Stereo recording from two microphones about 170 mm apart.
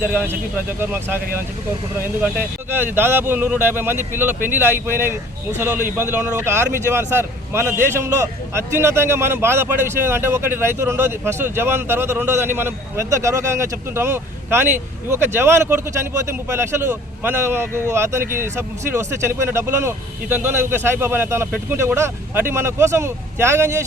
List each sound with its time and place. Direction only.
0.0 s a man's voice: 10° right (ahead or behind)